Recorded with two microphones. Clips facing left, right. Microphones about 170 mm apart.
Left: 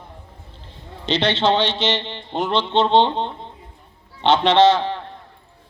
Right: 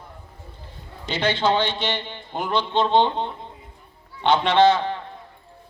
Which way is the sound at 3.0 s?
20° left (ahead or behind).